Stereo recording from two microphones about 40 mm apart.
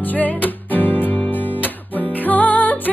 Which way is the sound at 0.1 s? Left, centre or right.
Left.